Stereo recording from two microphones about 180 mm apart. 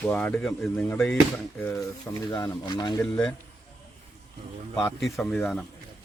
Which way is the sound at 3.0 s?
5° left (ahead or behind).